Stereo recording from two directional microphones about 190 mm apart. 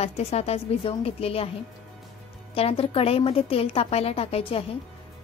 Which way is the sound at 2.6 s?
30° left (ahead or behind).